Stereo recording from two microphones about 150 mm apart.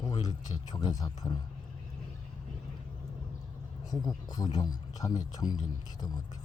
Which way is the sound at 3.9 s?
25° left (ahead or behind).